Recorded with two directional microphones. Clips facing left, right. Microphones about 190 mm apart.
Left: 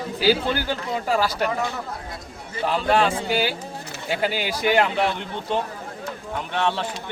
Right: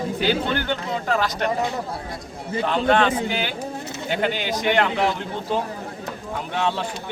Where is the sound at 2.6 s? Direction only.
5° left (ahead or behind).